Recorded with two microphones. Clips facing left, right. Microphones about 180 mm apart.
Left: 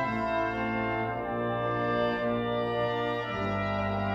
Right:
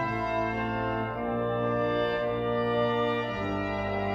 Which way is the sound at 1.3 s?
10° right (ahead or behind).